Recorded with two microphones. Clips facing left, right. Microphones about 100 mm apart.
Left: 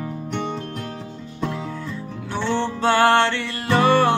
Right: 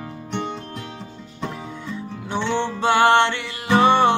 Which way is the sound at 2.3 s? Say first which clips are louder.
Even; 15° right (ahead or behind).